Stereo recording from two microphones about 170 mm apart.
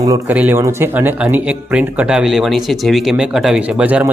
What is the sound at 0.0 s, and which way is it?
A man's voice, 20° right (ahead or behind).